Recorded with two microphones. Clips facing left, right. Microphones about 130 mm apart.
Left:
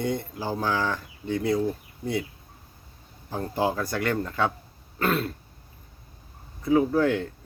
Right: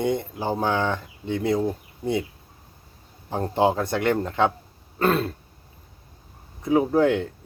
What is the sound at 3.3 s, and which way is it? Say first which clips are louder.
Speech: right 5 dB; 25° right (ahead or behind).